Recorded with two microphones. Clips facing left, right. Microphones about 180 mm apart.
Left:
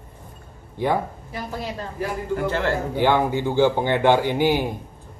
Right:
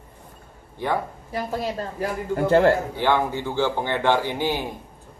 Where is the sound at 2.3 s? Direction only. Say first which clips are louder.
Right 7 dB; 40° right (ahead or behind).